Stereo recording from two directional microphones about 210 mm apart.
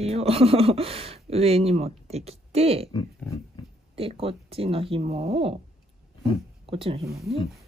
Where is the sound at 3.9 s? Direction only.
25° right (ahead or behind).